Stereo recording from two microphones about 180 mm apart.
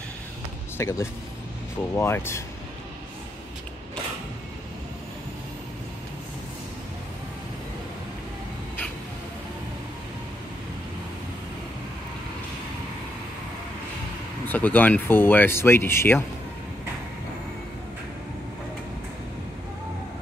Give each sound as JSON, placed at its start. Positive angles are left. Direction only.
{"t": 0.7, "sound": "speech", "side_deg": 15}
{"t": 14.4, "sound": "speech", "side_deg": 10}